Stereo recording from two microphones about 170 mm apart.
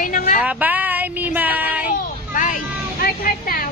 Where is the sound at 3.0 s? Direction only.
55° left (ahead or behind).